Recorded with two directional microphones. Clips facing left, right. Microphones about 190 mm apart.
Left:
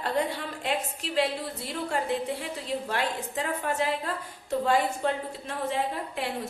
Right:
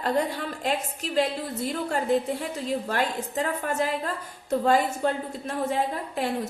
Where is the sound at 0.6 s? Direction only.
45° right (ahead or behind).